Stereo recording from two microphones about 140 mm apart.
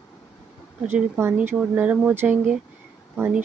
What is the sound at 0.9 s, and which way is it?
Speech, 15° right (ahead or behind).